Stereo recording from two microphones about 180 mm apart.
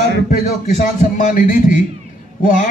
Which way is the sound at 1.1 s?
45° left (ahead or behind).